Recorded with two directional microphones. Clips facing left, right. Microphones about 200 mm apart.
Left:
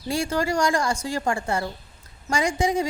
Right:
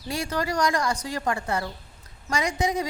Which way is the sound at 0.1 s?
30° left (ahead or behind).